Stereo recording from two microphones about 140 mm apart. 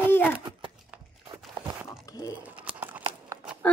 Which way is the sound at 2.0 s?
25° left (ahead or behind).